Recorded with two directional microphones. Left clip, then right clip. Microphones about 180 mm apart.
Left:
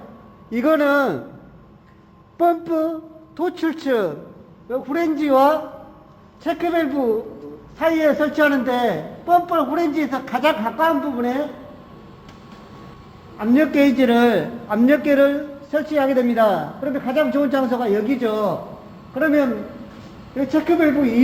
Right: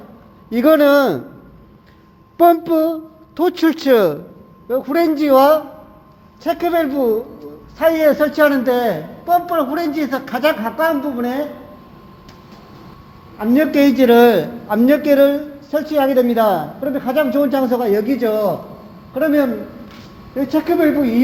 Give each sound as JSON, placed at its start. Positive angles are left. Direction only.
{"t": 0.5, "sound": "a man's voice", "side_deg": -25}
{"t": 2.4, "sound": "a woman's voice", "side_deg": -30}
{"t": 6.4, "sound": "a man's voice", "side_deg": -15}
{"t": 13.4, "sound": "a man's voice", "side_deg": -30}
{"t": 20.5, "sound": "a man's voice", "side_deg": -15}